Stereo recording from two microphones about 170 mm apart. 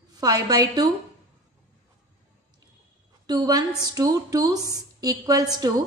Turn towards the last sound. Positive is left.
turn(degrees=-20)  # may be behind; listen again after turning